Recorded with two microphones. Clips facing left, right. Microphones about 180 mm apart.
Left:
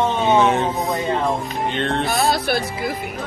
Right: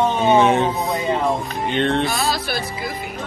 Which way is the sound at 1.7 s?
Centre (ahead or behind).